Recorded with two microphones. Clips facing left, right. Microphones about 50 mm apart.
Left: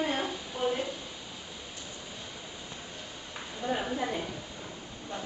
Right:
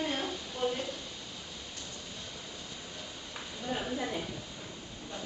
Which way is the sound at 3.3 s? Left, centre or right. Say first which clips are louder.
Left 4 dB; centre.